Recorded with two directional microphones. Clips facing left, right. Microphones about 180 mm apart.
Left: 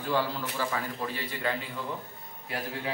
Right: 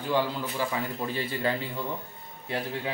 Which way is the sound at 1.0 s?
30° right (ahead or behind).